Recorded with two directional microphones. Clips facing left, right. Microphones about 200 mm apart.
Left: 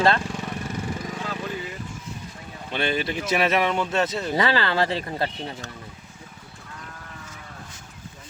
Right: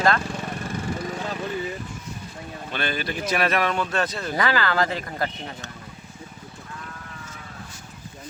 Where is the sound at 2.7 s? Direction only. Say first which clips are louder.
Left 3 dB; 25° left (ahead or behind).